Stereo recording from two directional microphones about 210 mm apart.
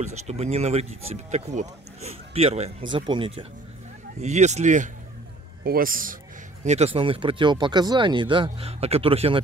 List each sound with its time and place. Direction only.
0.0 s a man's voice: 30° right (ahead or behind)